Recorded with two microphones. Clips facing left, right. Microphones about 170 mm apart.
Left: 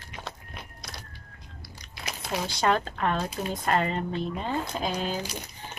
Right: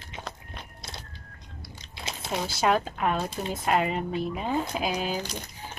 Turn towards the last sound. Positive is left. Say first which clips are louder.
# right 1 dB
turn(degrees=-10)  # may be behind; listen again after turning